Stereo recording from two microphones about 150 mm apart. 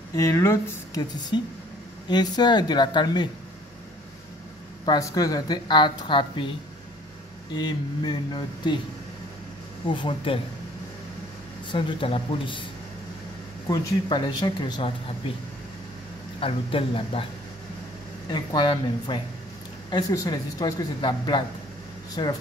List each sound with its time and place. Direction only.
0.1 s speech: 20° left (ahead or behind)
1.3 s a woman's voice: 30° left (ahead or behind)
4.8 s a woman's voice: 25° left (ahead or behind)
7.5 s a woman's voice: 30° left (ahead or behind)
9.9 s speech: 35° left (ahead or behind)
11.7 s speech: 35° left (ahead or behind)
13.7 s a woman's voice: 25° left (ahead or behind)
16.3 s speech: 40° left (ahead or behind)
18.3 s a woman's voice: 30° left (ahead or behind)